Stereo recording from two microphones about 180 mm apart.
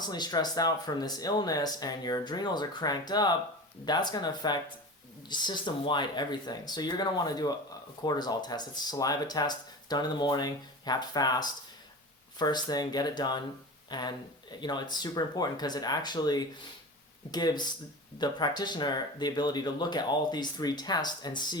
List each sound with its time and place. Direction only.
0.0 s speech: 20° left (ahead or behind)